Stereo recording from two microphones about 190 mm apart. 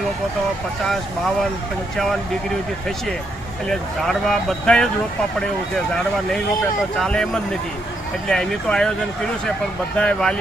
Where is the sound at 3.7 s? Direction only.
Centre (ahead or behind).